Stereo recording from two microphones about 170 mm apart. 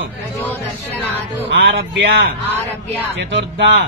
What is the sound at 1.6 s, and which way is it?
Speech, 80° right.